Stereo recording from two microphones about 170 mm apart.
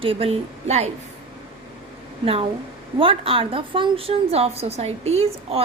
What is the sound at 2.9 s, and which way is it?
A woman's voice, 30° right (ahead or behind).